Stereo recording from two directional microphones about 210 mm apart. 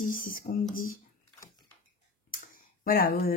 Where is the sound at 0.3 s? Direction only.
40° left (ahead or behind).